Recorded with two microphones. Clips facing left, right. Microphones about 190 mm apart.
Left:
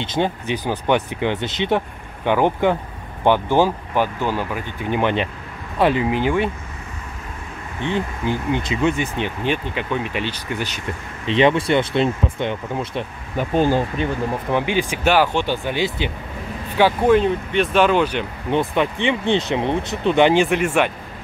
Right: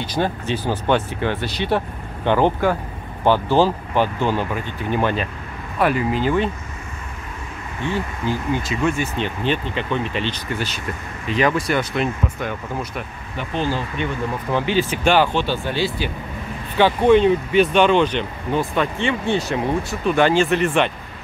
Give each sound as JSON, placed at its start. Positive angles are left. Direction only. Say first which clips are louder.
{"t": 0.0, "sound": "speech", "louder": "left 1 dB", "side_deg": 20}
{"t": 6.0, "sound": "speech", "louder": "even", "side_deg": 15}
{"t": 7.8, "sound": "speech", "louder": "left 1 dB", "side_deg": 20}
{"t": 11.2, "sound": "speech", "louder": "left 3 dB", "side_deg": 25}
{"t": 13.4, "sound": "speech", "louder": "left 6 dB", "side_deg": 45}
{"t": 14.5, "sound": "speech", "louder": "right 2 dB", "side_deg": 15}
{"t": 16.7, "sound": "speech", "louder": "right 1 dB", "side_deg": 5}
{"t": 18.5, "sound": "speech", "louder": "left 2 dB", "side_deg": 20}